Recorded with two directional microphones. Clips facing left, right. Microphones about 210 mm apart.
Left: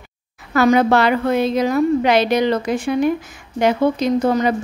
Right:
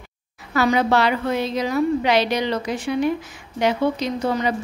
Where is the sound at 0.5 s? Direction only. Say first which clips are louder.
Left 5 dB; 50° left (ahead or behind).